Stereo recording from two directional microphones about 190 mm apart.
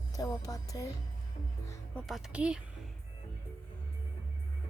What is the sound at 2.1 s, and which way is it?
Speech, centre (ahead or behind).